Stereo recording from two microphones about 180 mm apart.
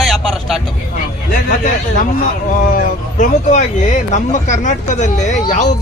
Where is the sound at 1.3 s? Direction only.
50° left (ahead or behind).